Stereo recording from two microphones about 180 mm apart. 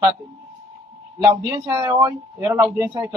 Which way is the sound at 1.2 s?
20° right (ahead or behind).